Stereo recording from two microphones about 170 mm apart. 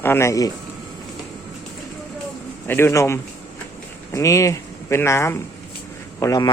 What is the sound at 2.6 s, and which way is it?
A man's voice, 15° left (ahead or behind).